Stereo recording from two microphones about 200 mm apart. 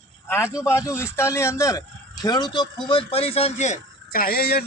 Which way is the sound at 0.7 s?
15° left (ahead or behind).